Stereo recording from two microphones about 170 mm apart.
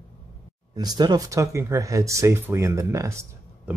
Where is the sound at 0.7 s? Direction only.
25° right (ahead or behind).